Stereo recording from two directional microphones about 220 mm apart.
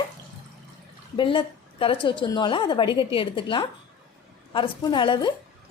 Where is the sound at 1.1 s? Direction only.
20° left (ahead or behind).